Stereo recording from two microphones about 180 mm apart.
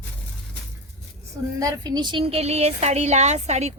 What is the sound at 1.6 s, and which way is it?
A woman's voice, 20° right (ahead or behind).